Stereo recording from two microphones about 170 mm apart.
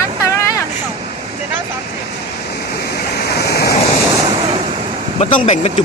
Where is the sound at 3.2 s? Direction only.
70° left (ahead or behind).